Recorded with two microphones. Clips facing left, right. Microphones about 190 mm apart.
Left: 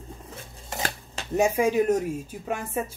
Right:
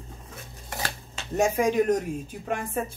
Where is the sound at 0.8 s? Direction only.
45° left (ahead or behind).